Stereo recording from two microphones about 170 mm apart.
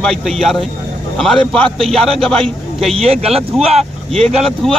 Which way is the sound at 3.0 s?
35° right (ahead or behind).